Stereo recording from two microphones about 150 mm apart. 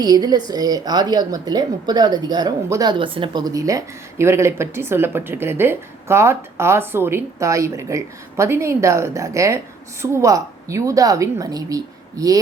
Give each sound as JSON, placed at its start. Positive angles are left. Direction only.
{"t": 0.0, "sound": "a woman's voice", "side_deg": -25}